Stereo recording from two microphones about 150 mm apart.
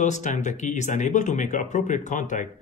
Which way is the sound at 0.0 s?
55° left (ahead or behind).